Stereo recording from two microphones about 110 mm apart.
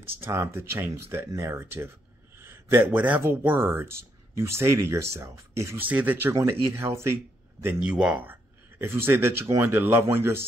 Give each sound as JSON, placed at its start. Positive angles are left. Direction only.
{"t": 0.0, "sound": "speech", "side_deg": -20}
{"t": 5.9, "sound": "speech", "side_deg": -15}
{"t": 7.8, "sound": "speech", "side_deg": -10}